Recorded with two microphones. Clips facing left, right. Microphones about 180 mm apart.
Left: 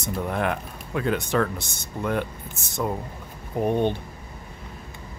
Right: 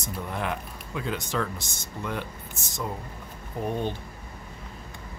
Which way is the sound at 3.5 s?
60° left (ahead or behind).